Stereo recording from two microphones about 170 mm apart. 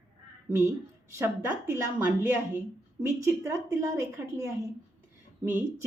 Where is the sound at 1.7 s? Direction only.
15° right (ahead or behind).